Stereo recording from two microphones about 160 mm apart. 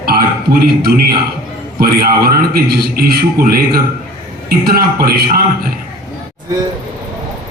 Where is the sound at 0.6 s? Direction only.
75° right (ahead or behind).